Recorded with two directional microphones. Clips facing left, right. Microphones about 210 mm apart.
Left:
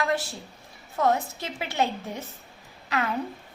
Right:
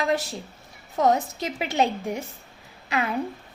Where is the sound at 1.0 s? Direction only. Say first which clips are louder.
Right 3 dB; 20° right (ahead or behind).